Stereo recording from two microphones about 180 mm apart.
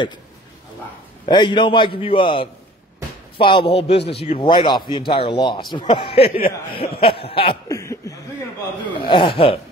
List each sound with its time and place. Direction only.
1.2 s speech: 25° left (ahead or behind)
3.3 s a sound: 30° left (ahead or behind)
4.2 s speech: 30° left (ahead or behind)
6.7 s a sound: 30° left (ahead or behind)
7.6 s chuckle: 15° left (ahead or behind)
9.0 s speech: 30° left (ahead or behind)